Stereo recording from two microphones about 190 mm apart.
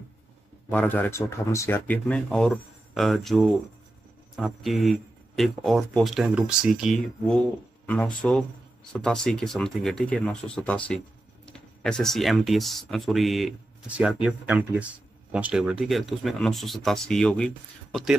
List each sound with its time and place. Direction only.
0.7 s speech: 10° left (ahead or behind)